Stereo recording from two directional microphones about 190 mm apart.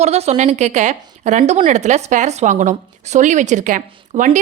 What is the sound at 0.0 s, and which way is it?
A woman's voice, 35° right (ahead or behind).